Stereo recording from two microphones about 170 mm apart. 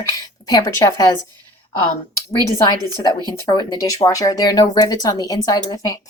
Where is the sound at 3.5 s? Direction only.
25° left (ahead or behind).